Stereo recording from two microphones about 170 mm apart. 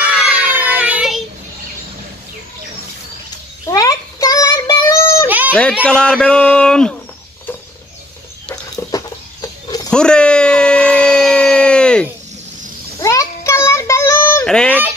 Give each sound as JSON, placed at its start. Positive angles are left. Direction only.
{"t": 0.0, "sound": "child singing", "side_deg": -5}
{"t": 3.6, "sound": "child singing", "side_deg": 20}
{"t": 5.5, "sound": "speech", "side_deg": 5}
{"t": 8.7, "sound": "a sound", "side_deg": 20}
{"t": 9.8, "sound": "a sound", "side_deg": 5}
{"t": 13.0, "sound": "child singing", "side_deg": 20}